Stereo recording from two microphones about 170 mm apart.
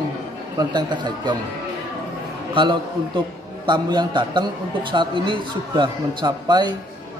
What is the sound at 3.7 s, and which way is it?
A man's voice, 25° right (ahead or behind).